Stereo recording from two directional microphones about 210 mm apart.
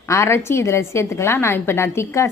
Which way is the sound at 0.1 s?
10° left (ahead or behind).